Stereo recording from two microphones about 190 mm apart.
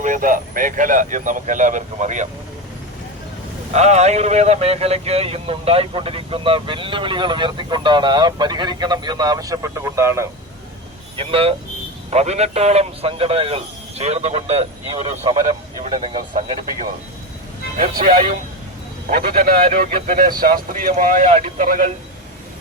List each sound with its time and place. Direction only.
0.0 s speech: 45° right (ahead or behind)
3.7 s speech: 35° right (ahead or behind); by 10.2 s 15° right (ahead or behind)
11.2 s speech: 30° right (ahead or behind)
18.0 s speech: 45° right (ahead or behind)